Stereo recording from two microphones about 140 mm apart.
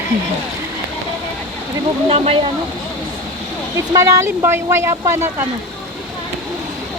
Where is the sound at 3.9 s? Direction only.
25° right (ahead or behind).